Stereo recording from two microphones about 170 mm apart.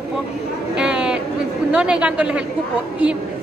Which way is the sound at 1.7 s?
5° right (ahead or behind).